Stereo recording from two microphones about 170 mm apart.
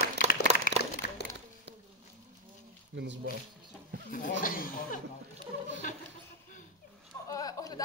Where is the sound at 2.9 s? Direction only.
90° right.